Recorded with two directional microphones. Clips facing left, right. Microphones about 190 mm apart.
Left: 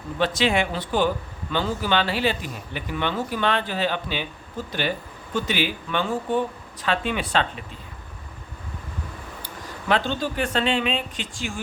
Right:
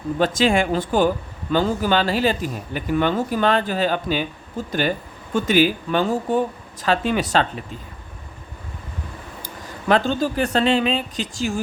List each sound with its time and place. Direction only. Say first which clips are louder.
0.2 s speech: right 3 dB; 45° right (ahead or behind)
9.9 s speech: right 5 dB; 40° right (ahead or behind)